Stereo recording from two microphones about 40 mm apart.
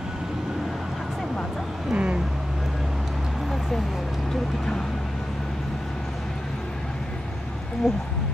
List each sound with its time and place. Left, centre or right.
1.9 s vehicle: right
7.8 s speech: centre